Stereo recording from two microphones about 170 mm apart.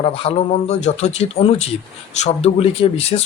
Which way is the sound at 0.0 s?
35° left (ahead or behind).